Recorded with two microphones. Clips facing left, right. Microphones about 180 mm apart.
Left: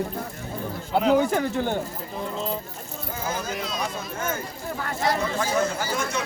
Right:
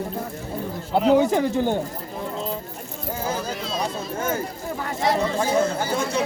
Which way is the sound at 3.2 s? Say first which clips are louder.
Right 1 dB; 30° right (ahead or behind).